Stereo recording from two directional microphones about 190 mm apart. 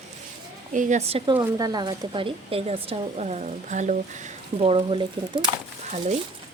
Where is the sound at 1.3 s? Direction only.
20° right (ahead or behind).